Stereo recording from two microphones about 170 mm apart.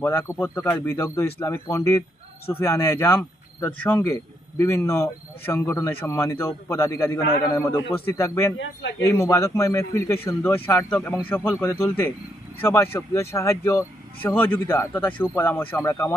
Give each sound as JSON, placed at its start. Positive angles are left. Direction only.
{"t": 0.0, "sound": "speech", "side_deg": 15}
{"t": 8.5, "sound": "speech", "side_deg": 90}
{"t": 9.0, "sound": "speech", "side_deg": 15}